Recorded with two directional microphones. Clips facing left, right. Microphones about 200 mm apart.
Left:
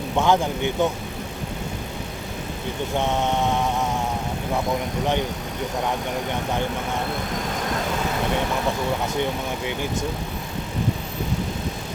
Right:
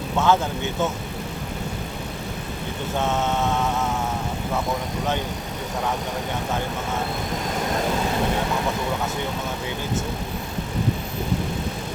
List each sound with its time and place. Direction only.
0.2 s mantra: 15° left (ahead or behind)
3.0 s mantra: 15° left (ahead or behind)